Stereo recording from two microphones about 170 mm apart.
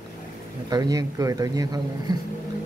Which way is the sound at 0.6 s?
25° right (ahead or behind).